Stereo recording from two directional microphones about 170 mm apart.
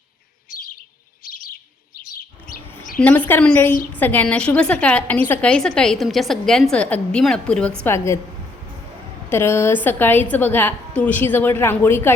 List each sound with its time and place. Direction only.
1.2 s chirp: 55° left (ahead or behind)
2.0 s bird: 60° left (ahead or behind)
3.0 s a woman's voice: 10° left (ahead or behind)
9.3 s a woman's voice: 15° left (ahead or behind)